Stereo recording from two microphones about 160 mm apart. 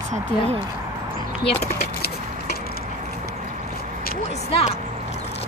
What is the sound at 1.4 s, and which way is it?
Speech, 35° left (ahead or behind).